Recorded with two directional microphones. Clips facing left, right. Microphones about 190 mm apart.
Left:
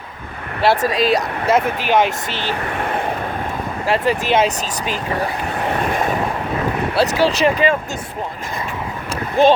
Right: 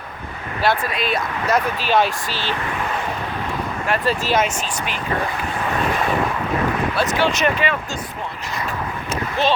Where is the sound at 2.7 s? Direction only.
55° left (ahead or behind).